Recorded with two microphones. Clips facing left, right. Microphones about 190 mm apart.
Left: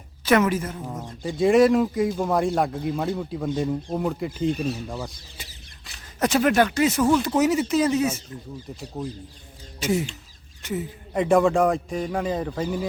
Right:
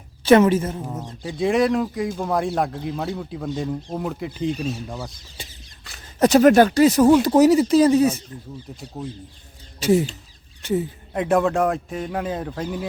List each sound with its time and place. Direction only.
0.3 s a woman's voice: 30° right (ahead or behind)
1.2 s a man's voice: centre (ahead or behind)
5.4 s a sound: 30° right (ahead or behind)
6.1 s speech: 40° right (ahead or behind)
9.0 s a man's voice: centre (ahead or behind)
9.8 s a woman's voice: 35° right (ahead or behind)
11.1 s a man's voice: centre (ahead or behind)